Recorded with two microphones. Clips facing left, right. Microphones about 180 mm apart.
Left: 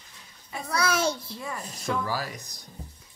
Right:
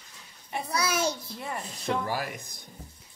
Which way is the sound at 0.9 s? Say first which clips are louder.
Left 2 dB; 25° left (ahead or behind).